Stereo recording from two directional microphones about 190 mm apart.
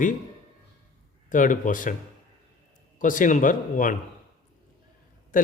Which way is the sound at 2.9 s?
45° left (ahead or behind).